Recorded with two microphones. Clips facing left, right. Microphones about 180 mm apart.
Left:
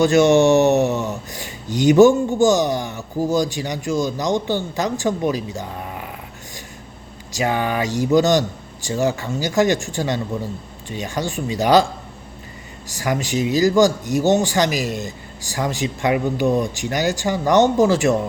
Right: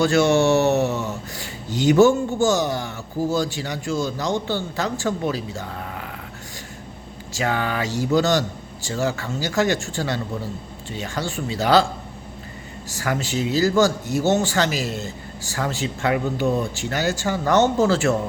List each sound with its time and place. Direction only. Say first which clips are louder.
0.0 s speech: left 4 dB; 20° left (ahead or behind)
7.3 s speech: left 3 dB; 15° left (ahead or behind)
12.9 s speech: left 3 dB; 15° left (ahead or behind)